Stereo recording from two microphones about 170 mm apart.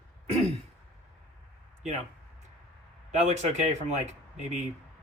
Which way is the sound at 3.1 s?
45° right (ahead or behind).